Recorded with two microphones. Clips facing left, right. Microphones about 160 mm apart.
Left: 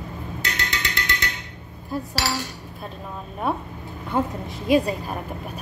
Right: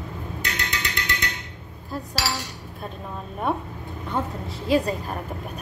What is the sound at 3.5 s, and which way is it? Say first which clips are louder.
A woman's voice: even; 5° left (ahead or behind).